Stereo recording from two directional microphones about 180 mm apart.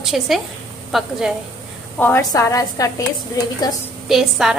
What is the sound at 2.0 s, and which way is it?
A woman's voice, 15° left (ahead or behind).